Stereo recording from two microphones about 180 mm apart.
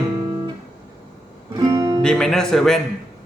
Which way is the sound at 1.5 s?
20° right (ahead or behind).